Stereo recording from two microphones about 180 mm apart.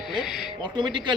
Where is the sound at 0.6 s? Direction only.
25° right (ahead or behind).